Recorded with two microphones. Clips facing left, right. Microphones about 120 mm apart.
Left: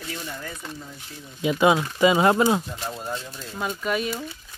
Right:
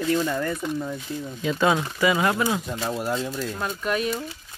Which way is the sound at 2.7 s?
90° right.